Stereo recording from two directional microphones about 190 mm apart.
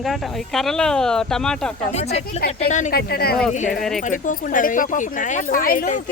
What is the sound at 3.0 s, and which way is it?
Speech, 55° left (ahead or behind).